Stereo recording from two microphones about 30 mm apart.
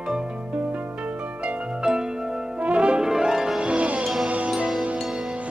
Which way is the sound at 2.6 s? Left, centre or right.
Right.